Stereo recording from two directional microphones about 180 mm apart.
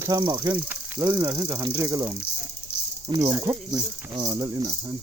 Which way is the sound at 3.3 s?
10° right (ahead or behind).